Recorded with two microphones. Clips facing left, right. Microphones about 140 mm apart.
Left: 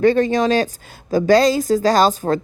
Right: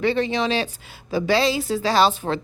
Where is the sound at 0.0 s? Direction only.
45° left (ahead or behind).